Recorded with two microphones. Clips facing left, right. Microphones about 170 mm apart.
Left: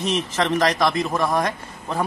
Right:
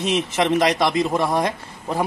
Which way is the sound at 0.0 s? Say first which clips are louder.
Right 2 dB; 15° right (ahead or behind).